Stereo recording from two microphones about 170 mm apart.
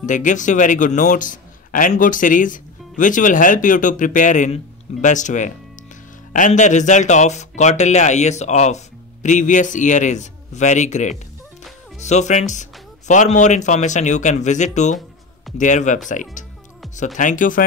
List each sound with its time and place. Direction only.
0.0 s speech: 45° left (ahead or behind)